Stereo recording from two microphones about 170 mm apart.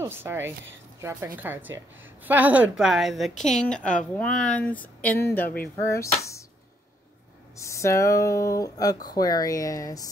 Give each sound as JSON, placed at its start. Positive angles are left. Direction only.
{"t": 0.0, "sound": "a woman's voice", "side_deg": -15}
{"t": 7.5, "sound": "speech", "side_deg": 15}